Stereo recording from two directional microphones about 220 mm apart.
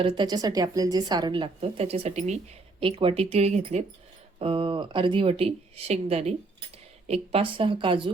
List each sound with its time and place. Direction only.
0.0 s a woman's voice: 20° right (ahead or behind)